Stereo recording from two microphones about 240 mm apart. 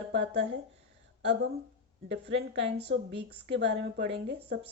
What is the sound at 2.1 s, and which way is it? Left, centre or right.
Speech, right.